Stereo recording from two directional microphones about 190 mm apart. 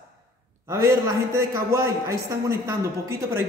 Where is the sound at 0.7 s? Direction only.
15° right (ahead or behind).